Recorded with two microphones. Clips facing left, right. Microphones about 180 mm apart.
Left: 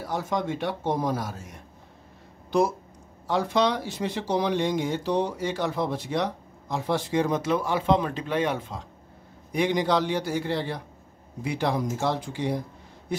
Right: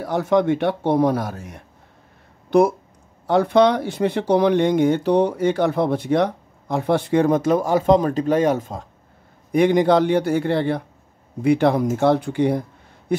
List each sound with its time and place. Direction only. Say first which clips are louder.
0.0 s speech: right 10 dB; 65° right (ahead or behind); by 8.8 s 45° right (ahead or behind)
9.5 s speech: right 8 dB; 55° right (ahead or behind)